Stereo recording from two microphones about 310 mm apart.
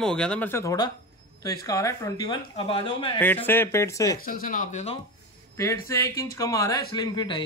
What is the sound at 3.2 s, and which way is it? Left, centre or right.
Speech, centre.